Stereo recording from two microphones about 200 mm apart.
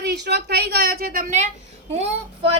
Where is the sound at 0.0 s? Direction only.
55° right (ahead or behind); by 1.5 s 40° right (ahead or behind).